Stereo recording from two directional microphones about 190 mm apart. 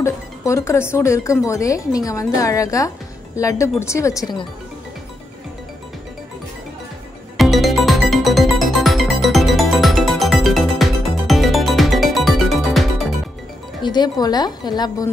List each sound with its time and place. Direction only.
0.0 s speech: 15° left (ahead or behind)
7.3 s music: centre (ahead or behind)
13.8 s a woman's voice: 20° left (ahead or behind)